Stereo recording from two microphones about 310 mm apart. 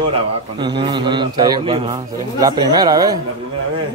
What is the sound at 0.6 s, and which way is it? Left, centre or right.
A man's voice, centre.